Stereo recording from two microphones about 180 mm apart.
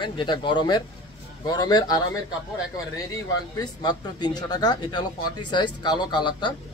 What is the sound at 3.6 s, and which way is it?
A man's voice, 20° left (ahead or behind).